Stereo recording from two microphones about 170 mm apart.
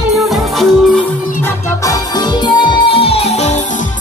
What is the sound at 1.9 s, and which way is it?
Music, 25° left (ahead or behind).